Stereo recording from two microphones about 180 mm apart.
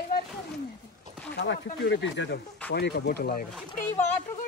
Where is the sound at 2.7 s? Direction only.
70° left (ahead or behind).